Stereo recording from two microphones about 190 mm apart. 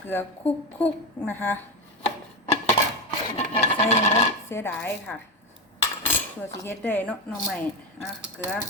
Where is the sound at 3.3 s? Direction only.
35° left (ahead or behind).